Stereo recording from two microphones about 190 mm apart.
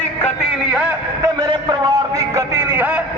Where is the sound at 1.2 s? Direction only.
20° right (ahead or behind).